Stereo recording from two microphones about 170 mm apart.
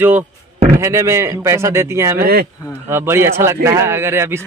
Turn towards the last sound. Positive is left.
turn(degrees=-15)  # may be behind; listen again after turning